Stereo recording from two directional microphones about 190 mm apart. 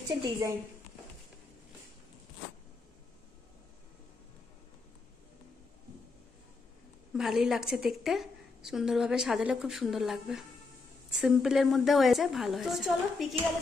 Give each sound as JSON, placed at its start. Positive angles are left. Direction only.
{"t": 0.1, "sound": "a woman's voice", "side_deg": -20}
{"t": 7.2, "sound": "a woman's voice", "side_deg": 0}